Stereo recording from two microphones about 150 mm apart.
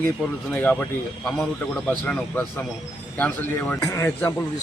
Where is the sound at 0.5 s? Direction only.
10° left (ahead or behind).